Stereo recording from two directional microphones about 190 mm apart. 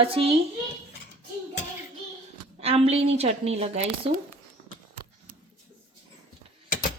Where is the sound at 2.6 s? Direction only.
30° right (ahead or behind).